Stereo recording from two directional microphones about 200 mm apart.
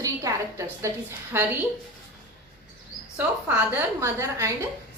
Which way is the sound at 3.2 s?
10° right (ahead or behind).